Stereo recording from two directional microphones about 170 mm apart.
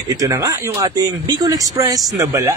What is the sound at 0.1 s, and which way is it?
A man's voice, 20° right (ahead or behind).